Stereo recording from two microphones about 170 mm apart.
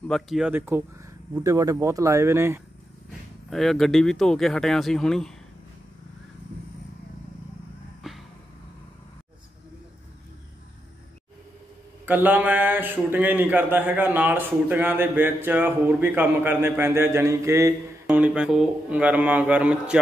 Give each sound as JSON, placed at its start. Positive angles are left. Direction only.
{"t": 0.1, "sound": "speech", "side_deg": -5}
{"t": 3.4, "sound": "speech", "side_deg": 0}
{"t": 8.0, "sound": "vehicle", "side_deg": 0}
{"t": 12.1, "sound": "speech", "side_deg": -10}